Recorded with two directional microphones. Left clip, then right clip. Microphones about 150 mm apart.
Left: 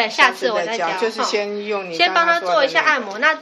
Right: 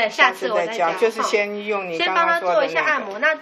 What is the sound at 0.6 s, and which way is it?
Speech, centre (ahead or behind).